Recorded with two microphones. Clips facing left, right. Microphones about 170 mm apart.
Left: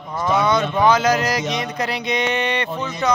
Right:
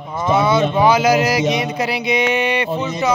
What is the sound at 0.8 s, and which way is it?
Speech, 10° right (ahead or behind).